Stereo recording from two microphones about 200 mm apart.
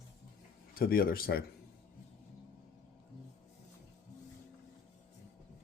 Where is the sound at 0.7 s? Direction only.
45° left (ahead or behind).